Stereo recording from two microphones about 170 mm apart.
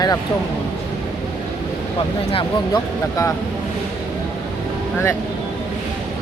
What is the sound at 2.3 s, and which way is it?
Speech, 20° left (ahead or behind).